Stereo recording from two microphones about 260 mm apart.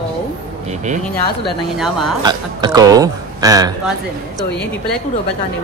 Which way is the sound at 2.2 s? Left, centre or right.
Centre.